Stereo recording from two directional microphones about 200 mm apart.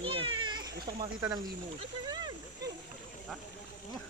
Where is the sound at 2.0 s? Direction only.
20° right (ahead or behind).